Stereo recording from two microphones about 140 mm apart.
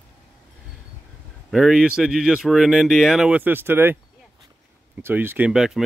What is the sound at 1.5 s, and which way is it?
Speech, centre (ahead or behind).